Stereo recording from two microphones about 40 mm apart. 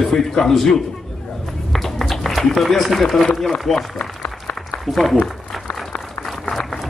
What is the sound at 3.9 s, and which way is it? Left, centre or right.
Applause, left.